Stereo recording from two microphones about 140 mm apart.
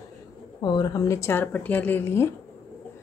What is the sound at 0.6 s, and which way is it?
Speech, 30° left (ahead or behind).